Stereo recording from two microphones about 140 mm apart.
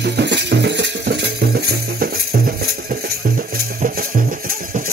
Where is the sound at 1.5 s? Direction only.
90° right.